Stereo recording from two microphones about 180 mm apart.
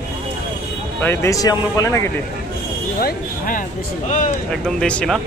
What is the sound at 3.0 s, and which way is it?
Speech, 50° left (ahead or behind).